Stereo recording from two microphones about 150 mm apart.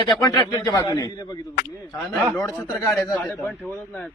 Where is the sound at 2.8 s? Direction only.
Centre (ahead or behind).